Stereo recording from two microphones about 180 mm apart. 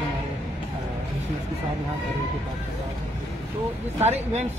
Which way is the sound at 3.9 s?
35° right (ahead or behind).